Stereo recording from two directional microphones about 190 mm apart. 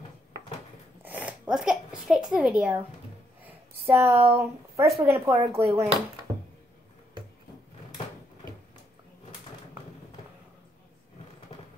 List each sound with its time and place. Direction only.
1.0 s a child's voice: 10° right (ahead or behind)
3.8 s speech: 15° right (ahead or behind)